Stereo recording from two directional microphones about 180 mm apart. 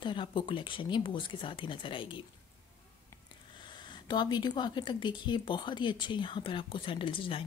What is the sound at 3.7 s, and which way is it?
Speech, 25° left (ahead or behind).